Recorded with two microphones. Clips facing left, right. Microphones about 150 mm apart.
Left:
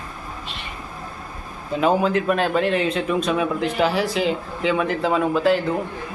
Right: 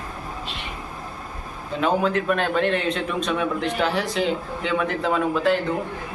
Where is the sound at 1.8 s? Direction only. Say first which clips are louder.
Left 2 dB; 5° left (ahead or behind).